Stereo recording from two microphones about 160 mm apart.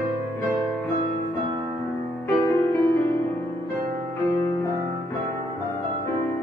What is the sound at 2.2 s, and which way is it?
Music, 15° left (ahead or behind).